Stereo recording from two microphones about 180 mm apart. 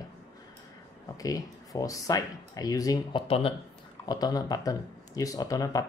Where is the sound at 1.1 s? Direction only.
20° left (ahead or behind).